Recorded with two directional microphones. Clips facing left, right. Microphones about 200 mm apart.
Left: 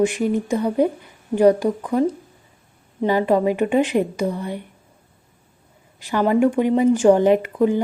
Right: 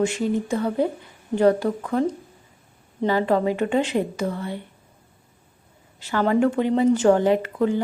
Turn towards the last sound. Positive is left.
turn(degrees=15)  # may be behind; listen again after turning